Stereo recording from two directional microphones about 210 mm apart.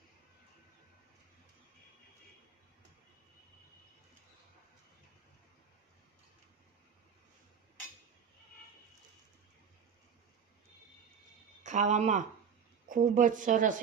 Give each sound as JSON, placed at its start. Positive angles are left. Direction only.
{"t": 11.6, "sound": "speech", "side_deg": -35}